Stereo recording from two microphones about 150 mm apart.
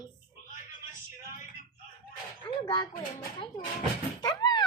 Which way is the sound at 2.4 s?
30° left (ahead or behind).